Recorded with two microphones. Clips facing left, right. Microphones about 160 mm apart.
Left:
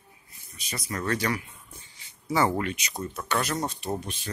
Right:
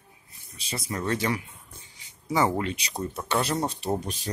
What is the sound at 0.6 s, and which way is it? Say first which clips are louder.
Speech: right 1 dB; 30° right (ahead or behind).